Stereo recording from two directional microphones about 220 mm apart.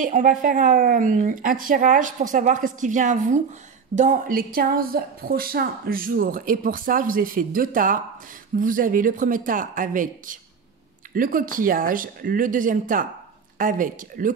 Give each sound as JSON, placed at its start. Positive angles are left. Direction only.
{"t": 0.0, "sound": "a woman's voice", "side_deg": -35}